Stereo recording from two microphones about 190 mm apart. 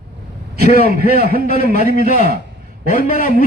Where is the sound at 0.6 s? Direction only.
50° right (ahead or behind).